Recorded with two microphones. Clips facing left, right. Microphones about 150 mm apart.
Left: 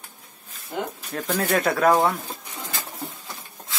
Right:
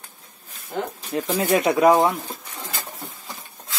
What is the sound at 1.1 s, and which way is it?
Speech, 10° right (ahead or behind).